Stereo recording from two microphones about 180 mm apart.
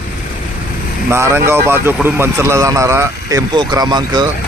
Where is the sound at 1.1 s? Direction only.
15° right (ahead or behind).